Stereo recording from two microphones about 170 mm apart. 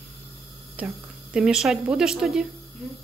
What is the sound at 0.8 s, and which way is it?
Speech, 10° right (ahead or behind).